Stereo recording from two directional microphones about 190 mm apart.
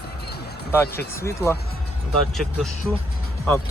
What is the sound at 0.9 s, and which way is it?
Speech, 15° left (ahead or behind).